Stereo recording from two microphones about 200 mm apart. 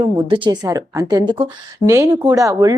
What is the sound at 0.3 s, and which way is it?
A woman's voice, 25° right (ahead or behind).